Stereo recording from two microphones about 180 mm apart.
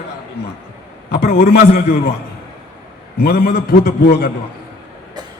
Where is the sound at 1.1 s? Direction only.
60° left (ahead or behind).